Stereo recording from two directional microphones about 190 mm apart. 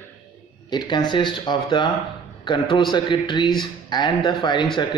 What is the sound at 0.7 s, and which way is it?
Speech, 25° left (ahead or behind).